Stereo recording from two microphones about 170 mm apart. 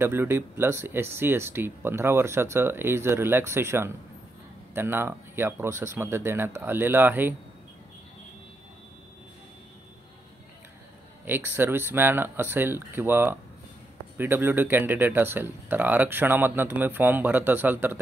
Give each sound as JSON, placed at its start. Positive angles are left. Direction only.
{"t": 0.0, "sound": "speech", "side_deg": -15}
{"t": 11.2, "sound": "speech", "side_deg": -10}